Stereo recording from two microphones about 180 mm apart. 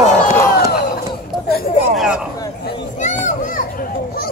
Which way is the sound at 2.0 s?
5° right (ahead or behind).